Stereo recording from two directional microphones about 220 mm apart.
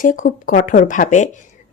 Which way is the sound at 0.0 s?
35° left (ahead or behind).